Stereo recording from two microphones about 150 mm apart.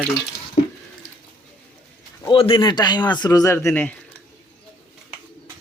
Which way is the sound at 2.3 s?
35° left (ahead or behind).